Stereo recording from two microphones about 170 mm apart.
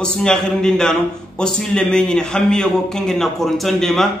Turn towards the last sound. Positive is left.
turn(degrees=0)  # may be behind; listen again after turning